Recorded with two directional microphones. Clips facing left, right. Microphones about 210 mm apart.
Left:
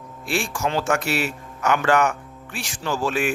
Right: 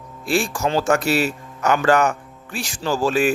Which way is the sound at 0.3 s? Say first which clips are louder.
Right 4 dB; 35° right (ahead or behind).